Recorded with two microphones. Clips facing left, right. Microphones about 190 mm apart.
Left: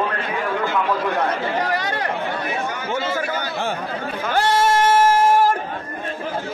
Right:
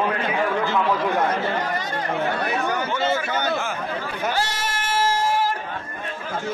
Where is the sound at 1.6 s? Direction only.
70° left (ahead or behind).